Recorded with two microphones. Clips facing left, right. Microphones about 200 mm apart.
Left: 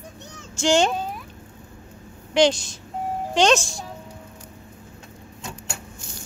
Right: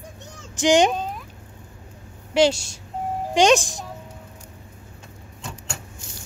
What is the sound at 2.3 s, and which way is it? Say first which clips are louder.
Speech: even; 10° right (ahead or behind).